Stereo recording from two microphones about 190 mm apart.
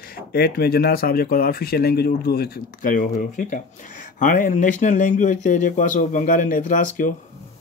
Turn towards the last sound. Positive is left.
turn(degrees=45)  # may be behind; listen again after turning